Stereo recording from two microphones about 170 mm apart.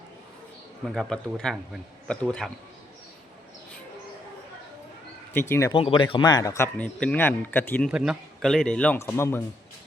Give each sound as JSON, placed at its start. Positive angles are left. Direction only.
{"t": 0.9, "sound": "speech", "side_deg": 5}
{"t": 5.3, "sound": "speech", "side_deg": 15}
{"t": 5.7, "sound": "a man's voice", "side_deg": 30}
{"t": 6.7, "sound": "speech", "side_deg": 5}
{"t": 7.9, "sound": "speech", "side_deg": -5}